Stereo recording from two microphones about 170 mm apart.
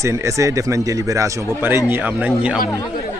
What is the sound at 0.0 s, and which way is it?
Speech, 15° right (ahead or behind).